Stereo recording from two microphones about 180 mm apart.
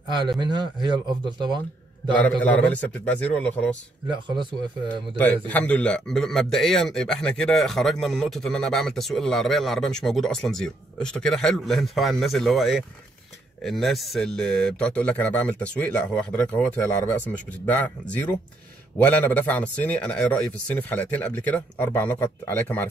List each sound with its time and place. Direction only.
0.1 s a man's voice: 25° right (ahead or behind)
2.4 s speech: 10° left (ahead or behind)
5.5 s speech: 5° left (ahead or behind)